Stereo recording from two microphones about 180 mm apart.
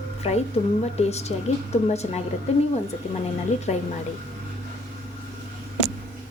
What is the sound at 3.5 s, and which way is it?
Speech, 40° left (ahead or behind).